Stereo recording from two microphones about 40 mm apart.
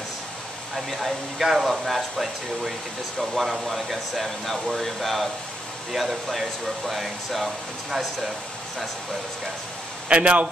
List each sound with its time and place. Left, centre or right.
0.7 s speech: centre
10.0 s speech: right